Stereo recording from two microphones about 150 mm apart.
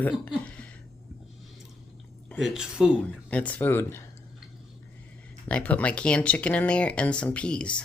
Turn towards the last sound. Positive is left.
turn(degrees=5)  # may be behind; listen again after turning